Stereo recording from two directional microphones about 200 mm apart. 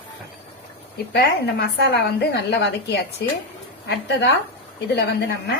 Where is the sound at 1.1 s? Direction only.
55° left (ahead or behind).